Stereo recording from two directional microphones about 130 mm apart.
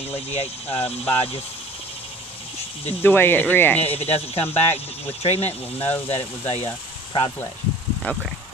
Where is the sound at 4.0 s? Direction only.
50° left (ahead or behind).